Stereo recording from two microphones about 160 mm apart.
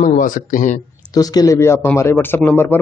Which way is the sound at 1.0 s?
25° left (ahead or behind).